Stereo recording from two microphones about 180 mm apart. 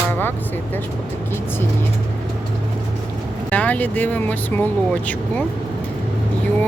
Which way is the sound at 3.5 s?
10° left (ahead or behind).